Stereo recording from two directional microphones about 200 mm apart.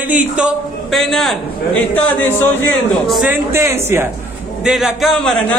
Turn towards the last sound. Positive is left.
turn(degrees=5)  # may be behind; listen again after turning